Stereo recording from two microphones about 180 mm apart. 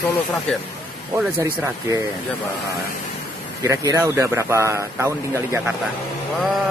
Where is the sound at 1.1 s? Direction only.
15° right (ahead or behind).